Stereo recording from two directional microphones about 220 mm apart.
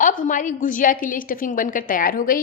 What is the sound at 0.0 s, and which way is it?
A woman's voice, 35° left (ahead or behind).